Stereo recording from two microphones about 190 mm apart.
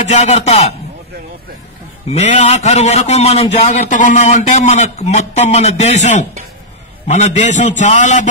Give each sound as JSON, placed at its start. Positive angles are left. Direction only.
{"t": 0.0, "sound": "a man's voice", "side_deg": 35}
{"t": 2.1, "sound": "a man's voice", "side_deg": 35}